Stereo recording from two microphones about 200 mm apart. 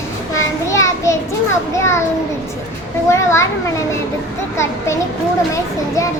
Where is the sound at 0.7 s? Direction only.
15° left (ahead or behind).